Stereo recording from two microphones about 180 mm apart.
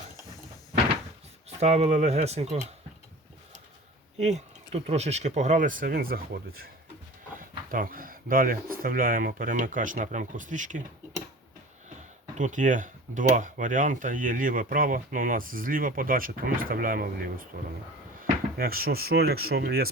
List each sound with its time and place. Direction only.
1.5 s speech: 35° right (ahead or behind)
4.2 s speech: 35° right (ahead or behind)
12.4 s speech: 45° right (ahead or behind)
18.5 s speech: 55° right (ahead or behind)